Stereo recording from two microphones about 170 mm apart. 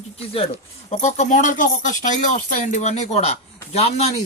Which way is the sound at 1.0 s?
45° left (ahead or behind).